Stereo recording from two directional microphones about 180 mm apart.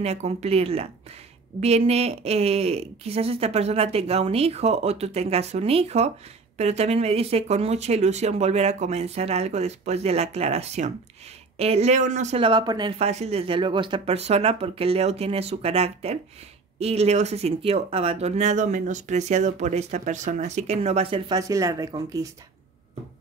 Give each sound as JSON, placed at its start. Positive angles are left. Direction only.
{"t": 0.0, "sound": "speech", "side_deg": -40}
{"t": 13.0, "sound": "speech", "side_deg": -35}
{"t": 21.4, "sound": "speech", "side_deg": -20}